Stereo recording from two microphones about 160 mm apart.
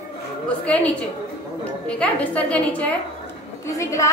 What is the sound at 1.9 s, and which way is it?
A woman's voice, 10° left (ahead or behind).